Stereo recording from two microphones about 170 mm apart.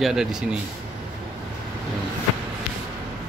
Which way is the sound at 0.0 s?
5° right (ahead or behind).